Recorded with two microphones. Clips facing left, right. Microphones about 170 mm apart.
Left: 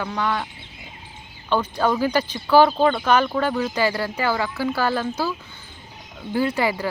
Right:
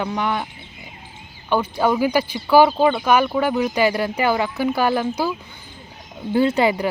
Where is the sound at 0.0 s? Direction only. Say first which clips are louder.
Right 2 dB; 15° right (ahead or behind).